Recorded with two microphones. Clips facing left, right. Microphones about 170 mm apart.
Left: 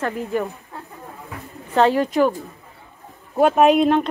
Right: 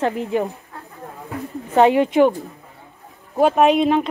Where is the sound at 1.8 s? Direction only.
15° right (ahead or behind).